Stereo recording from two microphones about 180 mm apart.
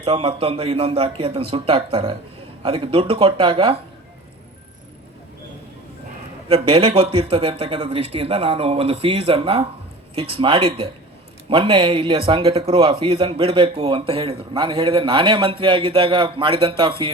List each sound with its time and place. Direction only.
0.0 s a man's voice: 30° right (ahead or behind)
6.5 s a man's voice: 30° right (ahead or behind)